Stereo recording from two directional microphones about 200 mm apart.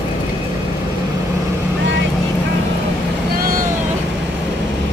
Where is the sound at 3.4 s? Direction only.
45° right (ahead or behind).